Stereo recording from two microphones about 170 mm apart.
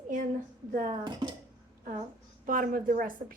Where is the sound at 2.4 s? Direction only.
55° right (ahead or behind).